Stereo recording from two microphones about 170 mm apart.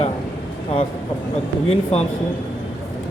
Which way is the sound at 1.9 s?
35° left (ahead or behind).